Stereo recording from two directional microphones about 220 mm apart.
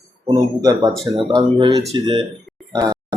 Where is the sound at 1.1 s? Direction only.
15° right (ahead or behind).